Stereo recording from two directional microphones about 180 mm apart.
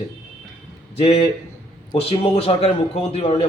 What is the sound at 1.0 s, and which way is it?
A man's voice, 35° left (ahead or behind).